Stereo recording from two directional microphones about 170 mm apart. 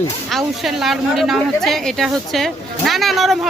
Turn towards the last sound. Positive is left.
turn(degrees=0)  # may be behind; listen again after turning